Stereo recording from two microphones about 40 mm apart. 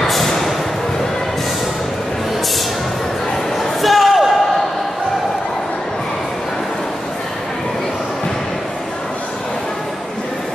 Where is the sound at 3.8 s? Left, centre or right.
Centre.